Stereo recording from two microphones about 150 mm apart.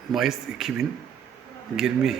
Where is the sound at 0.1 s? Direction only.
Centre (ahead or behind).